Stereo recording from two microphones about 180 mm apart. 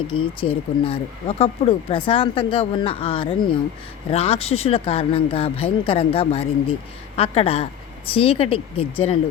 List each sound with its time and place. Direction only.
0.1 s speech: 30° left (ahead or behind)